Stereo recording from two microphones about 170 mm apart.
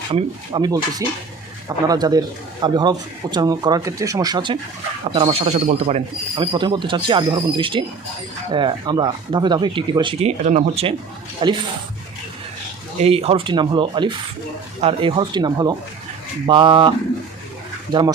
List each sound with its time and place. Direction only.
0.1 s speech: 30° right (ahead or behind)
5.0 s speech: 35° right (ahead or behind)
11.4 s speech: 30° right (ahead or behind)
13.0 s speech: 35° right (ahead or behind)